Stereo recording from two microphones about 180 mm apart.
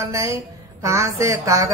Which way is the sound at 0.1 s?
15° right (ahead or behind).